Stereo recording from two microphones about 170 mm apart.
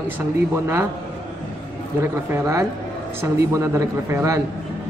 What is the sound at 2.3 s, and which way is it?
A man's voice, 15° right (ahead or behind).